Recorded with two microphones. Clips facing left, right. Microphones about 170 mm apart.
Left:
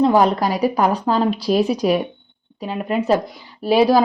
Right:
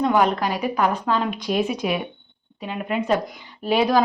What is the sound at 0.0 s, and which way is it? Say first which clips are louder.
Speech: left 4 dB; 35° left (ahead or behind).